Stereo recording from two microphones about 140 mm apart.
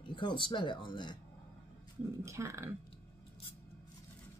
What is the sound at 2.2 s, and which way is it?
Speech, 20° right (ahead or behind).